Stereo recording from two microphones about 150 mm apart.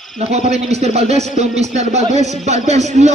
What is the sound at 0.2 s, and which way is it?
Speech, 45° right (ahead or behind).